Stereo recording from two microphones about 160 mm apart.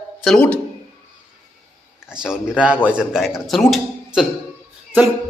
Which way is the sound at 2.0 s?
5° right (ahead or behind).